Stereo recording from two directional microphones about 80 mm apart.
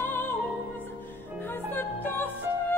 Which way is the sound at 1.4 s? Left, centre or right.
Left.